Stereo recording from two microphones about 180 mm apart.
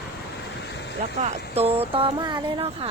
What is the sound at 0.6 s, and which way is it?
Vehicle, 70° left (ahead or behind).